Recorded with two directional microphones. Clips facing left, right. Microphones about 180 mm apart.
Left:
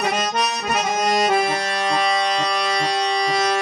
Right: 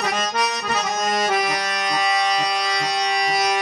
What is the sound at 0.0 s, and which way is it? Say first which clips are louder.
Accordion: left 1 dB; 25° left (ahead or behind).